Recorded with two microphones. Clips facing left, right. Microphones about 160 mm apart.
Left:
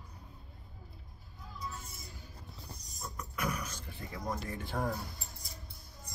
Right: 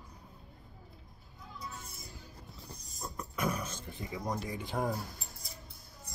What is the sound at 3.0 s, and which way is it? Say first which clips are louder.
Dog: right 3 dB; 30° right (ahead or behind).